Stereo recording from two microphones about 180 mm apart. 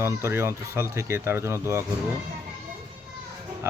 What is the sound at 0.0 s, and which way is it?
Speech, 15° right (ahead or behind).